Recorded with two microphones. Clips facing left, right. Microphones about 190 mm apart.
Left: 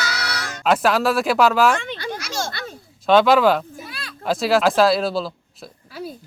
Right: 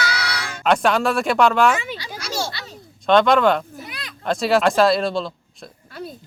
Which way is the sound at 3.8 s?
20° right (ahead or behind).